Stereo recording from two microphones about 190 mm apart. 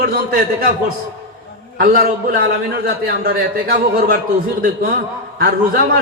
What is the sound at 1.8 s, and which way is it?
A man's voice, 50° right (ahead or behind).